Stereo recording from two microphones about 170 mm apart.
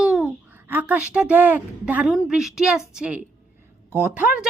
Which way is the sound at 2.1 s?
Centre (ahead or behind).